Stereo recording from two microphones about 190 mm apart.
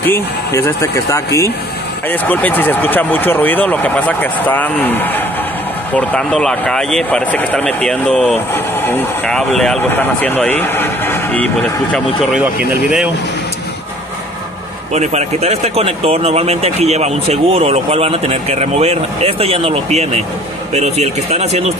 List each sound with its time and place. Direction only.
0.0 s speech: 15° left (ahead or behind)
15.0 s speech: 35° right (ahead or behind)